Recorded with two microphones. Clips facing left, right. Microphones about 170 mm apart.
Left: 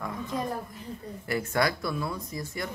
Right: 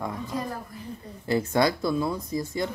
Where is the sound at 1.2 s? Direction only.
25° right (ahead or behind).